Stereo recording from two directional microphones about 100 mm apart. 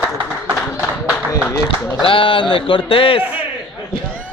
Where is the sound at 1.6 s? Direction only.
60° left (ahead or behind).